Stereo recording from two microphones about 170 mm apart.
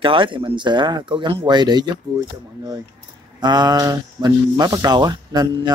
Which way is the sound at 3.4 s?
25° right (ahead or behind).